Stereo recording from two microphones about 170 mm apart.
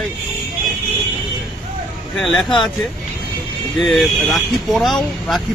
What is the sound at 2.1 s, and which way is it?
Speech, centre (ahead or behind).